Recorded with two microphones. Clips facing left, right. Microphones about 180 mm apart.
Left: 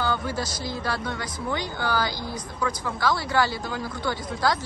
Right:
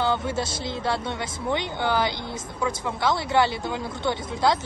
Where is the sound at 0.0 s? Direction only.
25° right (ahead or behind).